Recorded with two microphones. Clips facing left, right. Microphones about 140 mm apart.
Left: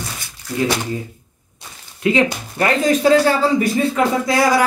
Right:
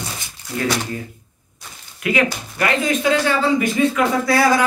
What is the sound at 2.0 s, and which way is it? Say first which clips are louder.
A man's voice: left 3 dB; 30° left (ahead or behind).